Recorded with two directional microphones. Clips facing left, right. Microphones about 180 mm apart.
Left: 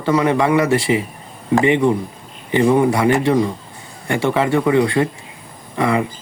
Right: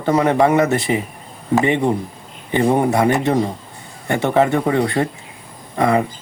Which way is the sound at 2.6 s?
40° right (ahead or behind).